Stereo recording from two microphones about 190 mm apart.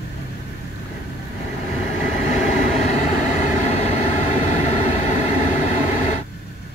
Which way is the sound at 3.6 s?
35° left (ahead or behind).